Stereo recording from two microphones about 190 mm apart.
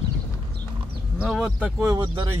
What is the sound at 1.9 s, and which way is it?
Speech, 20° right (ahead or behind).